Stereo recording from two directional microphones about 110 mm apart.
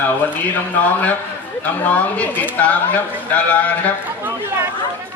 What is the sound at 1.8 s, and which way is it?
Speech, 15° left (ahead or behind).